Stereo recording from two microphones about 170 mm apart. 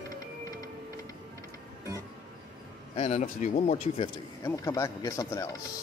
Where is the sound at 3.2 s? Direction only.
50° left (ahead or behind).